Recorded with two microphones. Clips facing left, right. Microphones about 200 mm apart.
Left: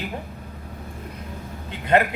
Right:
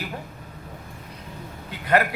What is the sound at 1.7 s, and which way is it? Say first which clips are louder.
Speech: left 2 dB; 20° left (ahead or behind).